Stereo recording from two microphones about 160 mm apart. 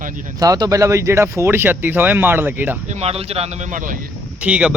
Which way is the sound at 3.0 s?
40° right (ahead or behind).